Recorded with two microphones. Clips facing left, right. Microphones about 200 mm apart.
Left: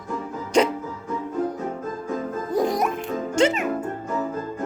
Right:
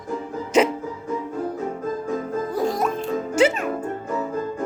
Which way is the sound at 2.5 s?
20° left (ahead or behind).